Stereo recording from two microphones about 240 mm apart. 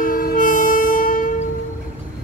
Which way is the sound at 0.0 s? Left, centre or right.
Left.